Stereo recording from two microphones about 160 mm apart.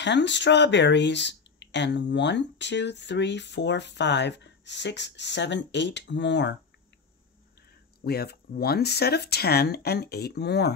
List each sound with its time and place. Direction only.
0.0 s speech: 90° left
8.0 s speech: 80° left